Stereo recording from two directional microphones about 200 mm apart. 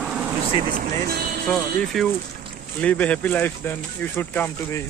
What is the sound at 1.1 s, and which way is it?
Speech, 50° right (ahead or behind).